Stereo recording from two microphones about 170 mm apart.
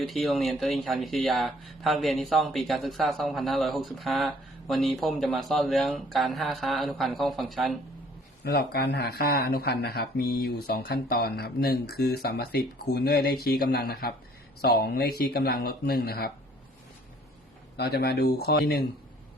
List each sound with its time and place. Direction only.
0.0 s speech: centre (ahead or behind)
8.4 s speech: 70° left (ahead or behind)
17.7 s speech: 70° left (ahead or behind)